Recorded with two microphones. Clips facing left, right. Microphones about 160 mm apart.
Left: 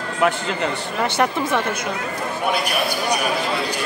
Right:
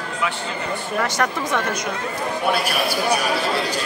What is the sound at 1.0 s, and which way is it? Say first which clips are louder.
Speech: left 2 dB; 30° left (ahead or behind).